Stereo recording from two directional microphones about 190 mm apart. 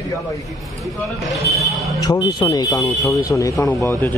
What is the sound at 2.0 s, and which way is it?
Speech, 20° left (ahead or behind).